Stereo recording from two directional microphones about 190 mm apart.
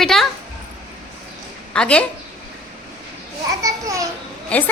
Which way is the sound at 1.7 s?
5° left (ahead or behind).